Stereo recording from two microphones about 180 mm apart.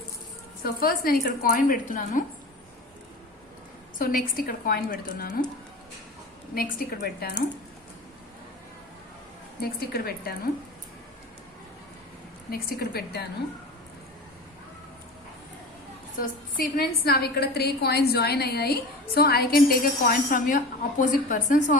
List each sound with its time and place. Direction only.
0.6 s a woman's voice: 55° left (ahead or behind)
3.9 s a woman's voice: 50° left (ahead or behind)
6.5 s a woman's voice: 55° left (ahead or behind)
9.6 s a woman's voice: 60° left (ahead or behind)
12.5 s a woman's voice: 60° left (ahead or behind)
16.6 s a woman's voice: 55° left (ahead or behind)